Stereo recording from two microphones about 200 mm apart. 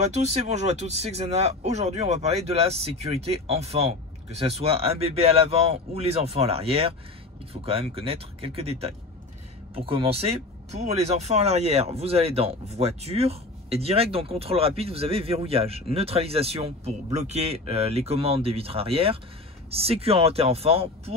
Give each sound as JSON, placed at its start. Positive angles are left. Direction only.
{"t": 0.0, "sound": "speech", "side_deg": -35}